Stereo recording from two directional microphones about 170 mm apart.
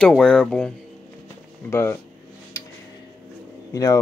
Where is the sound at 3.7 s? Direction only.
20° left (ahead or behind).